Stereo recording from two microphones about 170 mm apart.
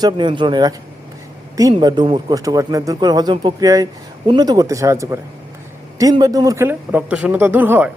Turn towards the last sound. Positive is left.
turn(degrees=-10)  # may be behind; listen again after turning